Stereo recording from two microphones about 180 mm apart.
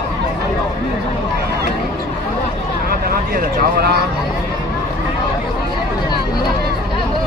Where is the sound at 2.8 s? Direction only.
55° right (ahead or behind).